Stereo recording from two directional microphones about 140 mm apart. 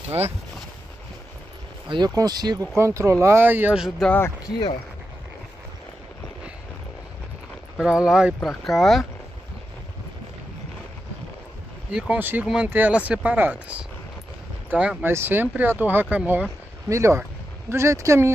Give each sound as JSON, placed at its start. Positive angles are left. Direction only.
{"t": 1.9, "sound": "speech", "side_deg": -30}
{"t": 4.0, "sound": "speech", "side_deg": 10}
{"t": 4.5, "sound": "speech", "side_deg": 30}
{"t": 7.8, "sound": "speech", "side_deg": -5}
{"t": 11.9, "sound": "speech", "side_deg": -10}
{"t": 16.9, "sound": "speech", "side_deg": -20}